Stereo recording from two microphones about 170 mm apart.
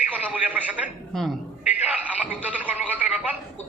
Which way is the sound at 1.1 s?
Centre (ahead or behind).